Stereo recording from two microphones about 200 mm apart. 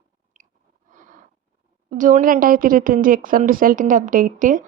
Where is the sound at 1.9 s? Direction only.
40° right (ahead or behind).